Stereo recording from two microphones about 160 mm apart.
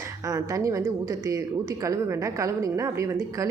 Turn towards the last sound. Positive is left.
turn(degrees=-20)  # may be behind; listen again after turning